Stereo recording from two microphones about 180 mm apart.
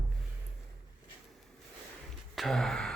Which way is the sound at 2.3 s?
Centre (ahead or behind).